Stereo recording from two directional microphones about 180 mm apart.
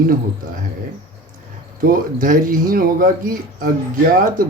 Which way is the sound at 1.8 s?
50° right (ahead or behind).